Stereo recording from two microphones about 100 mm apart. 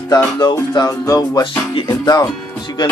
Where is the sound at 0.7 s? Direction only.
35° left (ahead or behind).